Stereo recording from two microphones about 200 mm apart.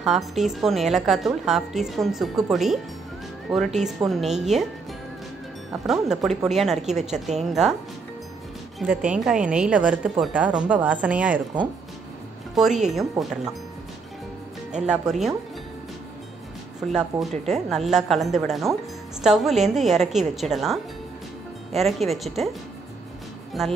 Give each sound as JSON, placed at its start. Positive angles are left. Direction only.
{"t": 0.0, "sound": "speech", "side_deg": 0}
{"t": 5.9, "sound": "speech", "side_deg": 0}
{"t": 8.7, "sound": "speech", "side_deg": -5}
{"t": 12.5, "sound": "speech", "side_deg": 0}
{"t": 14.7, "sound": "speech", "side_deg": -5}
{"t": 16.8, "sound": "speech", "side_deg": 0}
{"t": 23.6, "sound": "speech", "side_deg": 0}